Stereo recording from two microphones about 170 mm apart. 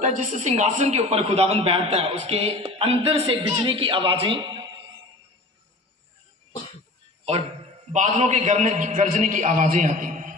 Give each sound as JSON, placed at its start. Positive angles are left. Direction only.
{"t": 0.0, "sound": "a man's voice", "side_deg": -45}
{"t": 7.9, "sound": "a man's voice", "side_deg": -45}